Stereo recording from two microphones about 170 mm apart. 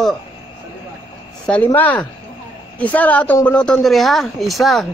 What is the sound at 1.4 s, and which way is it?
A woman's voice, 5° left (ahead or behind).